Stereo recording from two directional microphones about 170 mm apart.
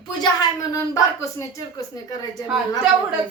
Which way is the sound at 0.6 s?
20° left (ahead or behind).